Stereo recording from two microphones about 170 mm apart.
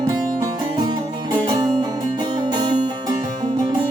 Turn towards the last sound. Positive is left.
turn(degrees=-25)  # may be behind; listen again after turning